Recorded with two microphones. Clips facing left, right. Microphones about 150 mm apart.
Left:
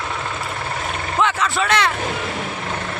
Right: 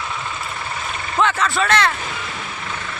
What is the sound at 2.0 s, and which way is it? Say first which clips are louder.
Vehicle: left 5 dB; 55° left (ahead or behind).